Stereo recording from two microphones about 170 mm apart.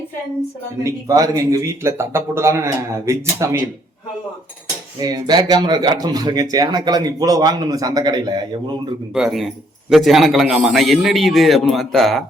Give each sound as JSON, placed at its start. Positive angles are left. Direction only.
{"t": 0.9, "sound": "speech", "side_deg": -20}
{"t": 4.9, "sound": "speech", "side_deg": -25}
{"t": 9.1, "sound": "a man's voice", "side_deg": 0}